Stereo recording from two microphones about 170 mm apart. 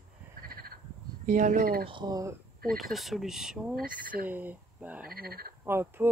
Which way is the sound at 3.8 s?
55° right (ahead or behind).